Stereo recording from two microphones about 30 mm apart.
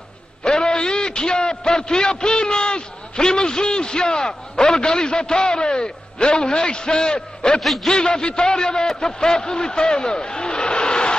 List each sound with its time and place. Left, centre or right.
0.4 s a sound: left
2.4 s a man's voice: left
7.6 s a man's voice: centre
7.9 s a man's voice: left